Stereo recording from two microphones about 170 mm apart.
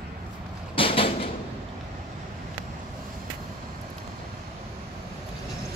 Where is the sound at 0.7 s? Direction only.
30° left (ahead or behind).